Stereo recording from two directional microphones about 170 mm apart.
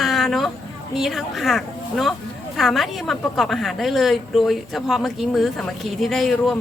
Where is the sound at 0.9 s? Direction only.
Centre (ahead or behind).